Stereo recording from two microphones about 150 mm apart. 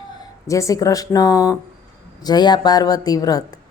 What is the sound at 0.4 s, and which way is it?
A woman's voice, 20° left (ahead or behind).